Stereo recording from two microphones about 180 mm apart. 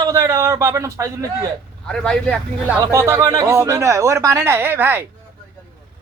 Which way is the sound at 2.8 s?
15° right (ahead or behind).